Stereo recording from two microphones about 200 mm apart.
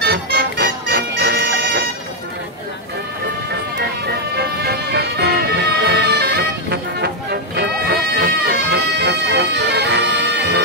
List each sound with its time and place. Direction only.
0.0 s music: 55° right (ahead or behind)
3.7 s music: 55° right (ahead or behind)